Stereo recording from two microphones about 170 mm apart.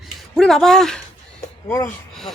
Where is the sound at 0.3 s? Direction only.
Centre (ahead or behind).